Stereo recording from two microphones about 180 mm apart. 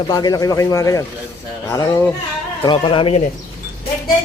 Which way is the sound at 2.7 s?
30° left (ahead or behind).